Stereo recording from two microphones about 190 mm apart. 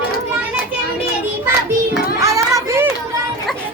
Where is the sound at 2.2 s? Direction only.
15° right (ahead or behind).